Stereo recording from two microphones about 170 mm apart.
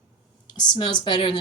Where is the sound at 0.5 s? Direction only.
25° left (ahead or behind).